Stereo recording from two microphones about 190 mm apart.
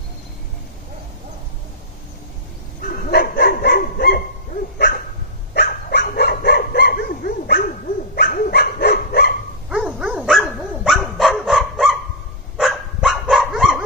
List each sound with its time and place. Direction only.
2.9 s dog: 55° left (ahead or behind)
9.7 s dog: 5° right (ahead or behind)